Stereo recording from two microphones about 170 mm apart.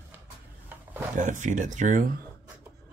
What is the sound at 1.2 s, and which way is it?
Speech, 45° right (ahead or behind).